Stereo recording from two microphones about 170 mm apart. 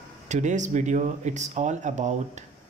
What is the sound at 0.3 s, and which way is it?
Speech, 45° right (ahead or behind).